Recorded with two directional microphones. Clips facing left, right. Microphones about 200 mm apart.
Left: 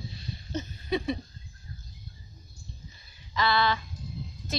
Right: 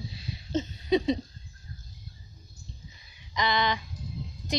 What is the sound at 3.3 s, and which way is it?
Speech, 15° right (ahead or behind).